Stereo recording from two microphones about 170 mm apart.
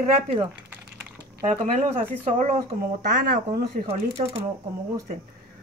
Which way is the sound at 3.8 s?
35° right (ahead or behind).